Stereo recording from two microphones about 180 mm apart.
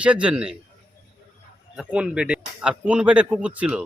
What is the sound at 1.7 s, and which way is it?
Speech, 5° right (ahead or behind).